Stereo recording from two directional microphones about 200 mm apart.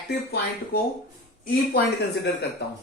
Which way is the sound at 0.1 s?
50° left (ahead or behind).